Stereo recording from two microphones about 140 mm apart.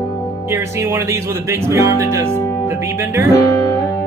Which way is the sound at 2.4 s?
20° left (ahead or behind).